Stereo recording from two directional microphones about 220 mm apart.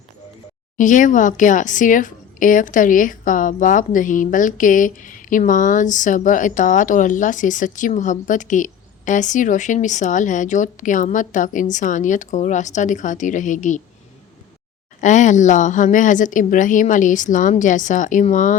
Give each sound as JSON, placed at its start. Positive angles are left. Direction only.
{"t": 0.8, "sound": "a woman's voice", "side_deg": 35}
{"t": 15.0, "sound": "a woman's voice", "side_deg": 35}